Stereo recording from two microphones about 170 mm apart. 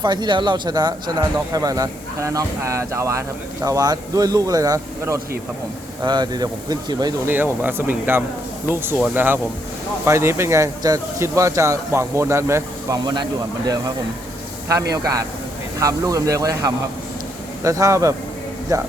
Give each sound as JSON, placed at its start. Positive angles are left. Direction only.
{"t": 0.0, "sound": "speech", "side_deg": -25}
{"t": 7.3, "sound": "speech", "side_deg": -10}
{"t": 14.9, "sound": "speech", "side_deg": -20}